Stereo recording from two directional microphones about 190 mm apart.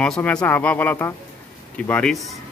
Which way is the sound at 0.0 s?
5° left (ahead or behind).